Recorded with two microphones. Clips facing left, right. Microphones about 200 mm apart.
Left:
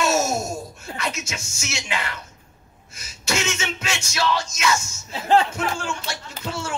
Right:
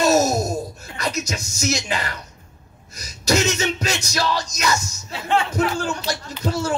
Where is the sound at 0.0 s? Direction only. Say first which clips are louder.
Right 4 dB; 35° right (ahead or behind).